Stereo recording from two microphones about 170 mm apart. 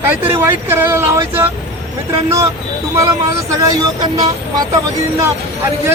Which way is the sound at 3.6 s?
20° right (ahead or behind).